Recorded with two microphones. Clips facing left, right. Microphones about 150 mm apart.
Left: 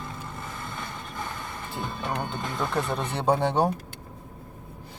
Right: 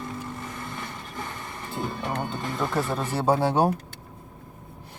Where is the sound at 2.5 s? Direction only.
35° right (ahead or behind).